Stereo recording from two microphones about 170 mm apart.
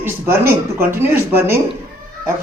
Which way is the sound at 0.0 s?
15° right (ahead or behind).